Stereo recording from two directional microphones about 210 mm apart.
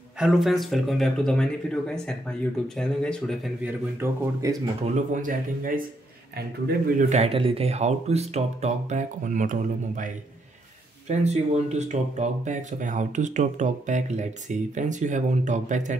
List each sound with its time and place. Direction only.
0.2 s speech: centre (ahead or behind)
4.0 s speech: 15° right (ahead or behind)
4.9 s speech: 40° right (ahead or behind)
7.0 s speech: 30° right (ahead or behind)
11.1 s speech: 30° right (ahead or behind)